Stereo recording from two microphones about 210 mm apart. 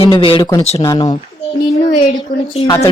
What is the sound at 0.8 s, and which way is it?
A child's voice, 20° left (ahead or behind).